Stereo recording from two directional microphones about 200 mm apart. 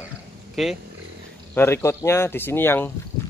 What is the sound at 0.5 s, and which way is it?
Speech, centre (ahead or behind).